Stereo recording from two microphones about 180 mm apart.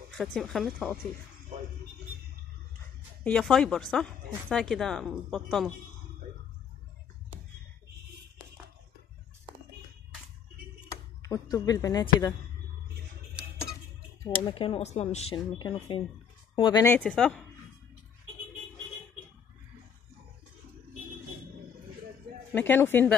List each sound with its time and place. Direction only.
0.2 s speech: centre (ahead or behind)
3.3 s speech: 5° left (ahead or behind)
10.9 s speech: 20° left (ahead or behind)
14.4 s speech: 30° left (ahead or behind)
15.3 s speech: 25° left (ahead or behind)
16.8 s speech: 10° left (ahead or behind)
22.5 s speech: 10° left (ahead or behind)